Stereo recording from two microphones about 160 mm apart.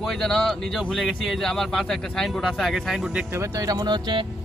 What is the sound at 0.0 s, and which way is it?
Speech, centre (ahead or behind).